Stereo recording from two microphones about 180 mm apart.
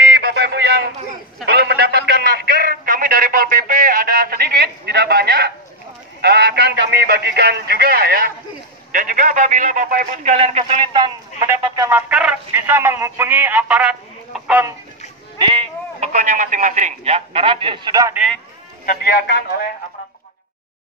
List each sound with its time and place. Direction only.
0.0 s a sound: 60° right (ahead or behind)
6.2 s speech: 65° right (ahead or behind); by 10.3 s 50° right (ahead or behind)
10.3 s speech: 35° right (ahead or behind); by 12.0 s 15° right (ahead or behind)
12.1 s speech: 5° right (ahead or behind)
15.3 s sheep: 30° right (ahead or behind)
16.1 s a man's voice: 45° right (ahead or behind); by 18.1 s 25° right (ahead or behind)
18.9 s speech: 60° left (ahead or behind)